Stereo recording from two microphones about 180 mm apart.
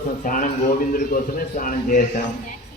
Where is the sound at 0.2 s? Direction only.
50° left (ahead or behind).